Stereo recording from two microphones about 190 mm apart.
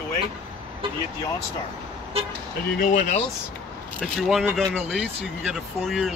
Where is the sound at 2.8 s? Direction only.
45° left (ahead or behind).